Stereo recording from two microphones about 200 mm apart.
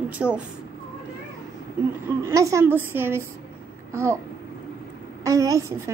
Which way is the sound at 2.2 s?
15° right (ahead or behind).